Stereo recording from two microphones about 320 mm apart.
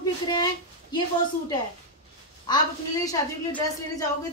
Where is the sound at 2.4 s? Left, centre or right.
Centre.